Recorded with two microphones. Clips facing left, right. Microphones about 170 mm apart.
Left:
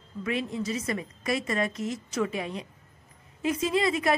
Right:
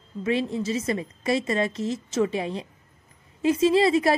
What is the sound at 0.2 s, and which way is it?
A woman's voice, 30° right (ahead or behind).